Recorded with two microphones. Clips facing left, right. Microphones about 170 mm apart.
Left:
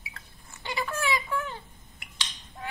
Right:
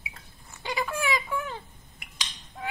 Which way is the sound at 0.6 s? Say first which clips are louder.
Right 1 dB; 15° right (ahead or behind).